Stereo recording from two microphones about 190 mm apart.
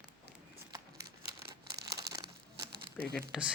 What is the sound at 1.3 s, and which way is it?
Crumpling, 60° right (ahead or behind).